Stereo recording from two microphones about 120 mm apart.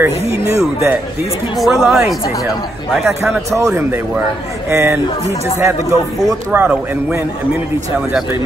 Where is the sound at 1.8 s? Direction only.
5° right (ahead or behind).